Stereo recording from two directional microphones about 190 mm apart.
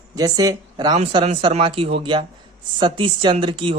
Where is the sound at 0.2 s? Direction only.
20° right (ahead or behind).